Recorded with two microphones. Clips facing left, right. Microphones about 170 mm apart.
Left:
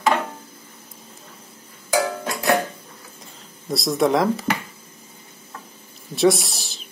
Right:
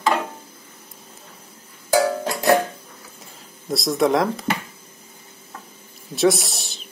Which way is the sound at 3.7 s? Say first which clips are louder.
Even; centre (ahead or behind).